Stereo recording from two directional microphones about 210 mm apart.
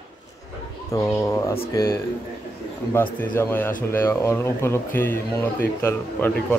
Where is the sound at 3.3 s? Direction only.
10° left (ahead or behind).